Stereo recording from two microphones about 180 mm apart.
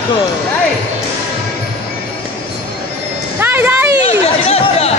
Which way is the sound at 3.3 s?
10° right (ahead or behind).